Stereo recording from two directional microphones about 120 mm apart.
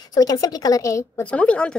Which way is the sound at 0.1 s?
30° left (ahead or behind).